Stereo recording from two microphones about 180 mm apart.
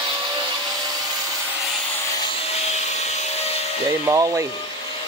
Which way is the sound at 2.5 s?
35° left (ahead or behind).